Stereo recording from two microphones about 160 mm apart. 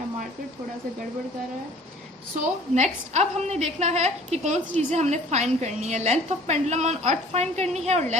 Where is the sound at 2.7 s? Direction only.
45° right (ahead or behind).